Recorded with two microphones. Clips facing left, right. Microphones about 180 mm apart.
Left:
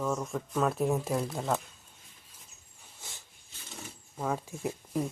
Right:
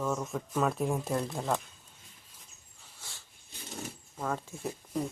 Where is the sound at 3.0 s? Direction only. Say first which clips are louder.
Left 2 dB; 20° left (ahead or behind).